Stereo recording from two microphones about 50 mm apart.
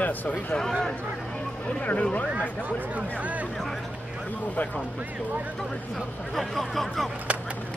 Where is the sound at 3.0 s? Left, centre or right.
Right.